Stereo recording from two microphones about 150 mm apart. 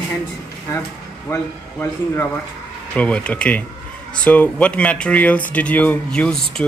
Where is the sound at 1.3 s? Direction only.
15° left (ahead or behind).